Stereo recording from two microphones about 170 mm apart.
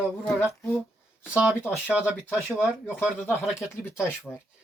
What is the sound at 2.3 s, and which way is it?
Speech, centre (ahead or behind).